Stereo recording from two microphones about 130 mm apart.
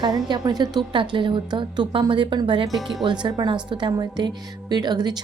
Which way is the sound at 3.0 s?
35° right (ahead or behind).